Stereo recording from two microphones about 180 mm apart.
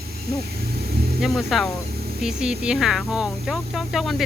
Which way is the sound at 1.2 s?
Centre (ahead or behind).